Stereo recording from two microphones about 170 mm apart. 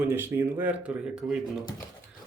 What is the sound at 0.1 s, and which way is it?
Speech, 15° right (ahead or behind).